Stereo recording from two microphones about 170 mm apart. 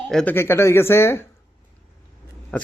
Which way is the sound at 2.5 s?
5° left (ahead or behind).